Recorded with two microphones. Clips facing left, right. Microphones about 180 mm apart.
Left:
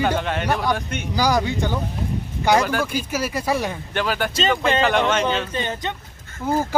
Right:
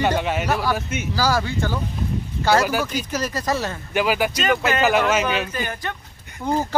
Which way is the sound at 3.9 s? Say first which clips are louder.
Right 4 dB; 10° right (ahead or behind).